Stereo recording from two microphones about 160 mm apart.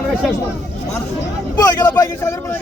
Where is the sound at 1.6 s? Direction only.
20° left (ahead or behind).